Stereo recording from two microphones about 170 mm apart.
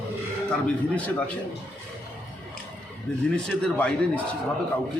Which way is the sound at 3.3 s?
5° left (ahead or behind).